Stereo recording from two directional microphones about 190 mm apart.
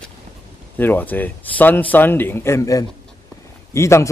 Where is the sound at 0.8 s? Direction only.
10° left (ahead or behind).